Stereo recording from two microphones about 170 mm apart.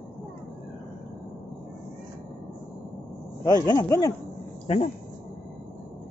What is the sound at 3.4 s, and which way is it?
Speech, 25° left (ahead or behind).